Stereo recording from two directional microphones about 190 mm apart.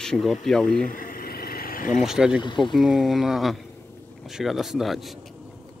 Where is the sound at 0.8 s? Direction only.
45° left (ahead or behind).